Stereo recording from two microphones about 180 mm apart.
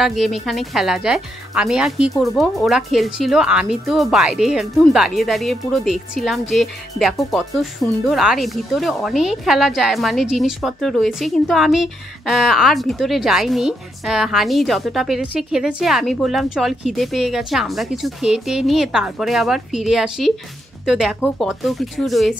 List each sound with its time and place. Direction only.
0.0 s speech: centre (ahead or behind)